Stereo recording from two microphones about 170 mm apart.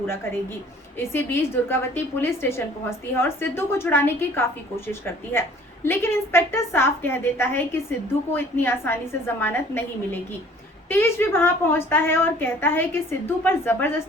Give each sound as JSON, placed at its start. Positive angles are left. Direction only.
{"t": 0.9, "sound": "a woman's voice", "side_deg": 15}